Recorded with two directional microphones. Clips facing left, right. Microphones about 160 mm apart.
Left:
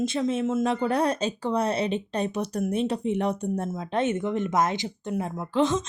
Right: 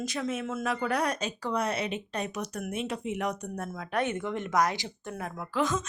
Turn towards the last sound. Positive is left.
turn(degrees=25)  # may be behind; listen again after turning